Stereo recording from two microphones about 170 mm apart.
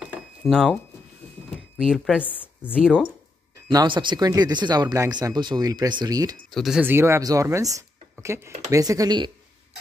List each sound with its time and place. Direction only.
0.4 s speech: centre (ahead or behind)
2.2 s a sound: 10° left (ahead or behind)
2.7 s speech: 5° right (ahead or behind)
3.6 s speech: 30° right (ahead or behind)
6.5 s speech: centre (ahead or behind); by 9.3 s 25° right (ahead or behind)